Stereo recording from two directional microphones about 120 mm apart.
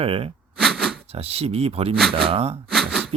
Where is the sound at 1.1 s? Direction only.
55° right (ahead or behind).